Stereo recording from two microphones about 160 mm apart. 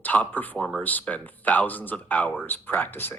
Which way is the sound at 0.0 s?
10° left (ahead or behind).